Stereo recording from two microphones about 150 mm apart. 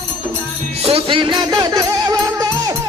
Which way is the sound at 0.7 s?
40° right (ahead or behind).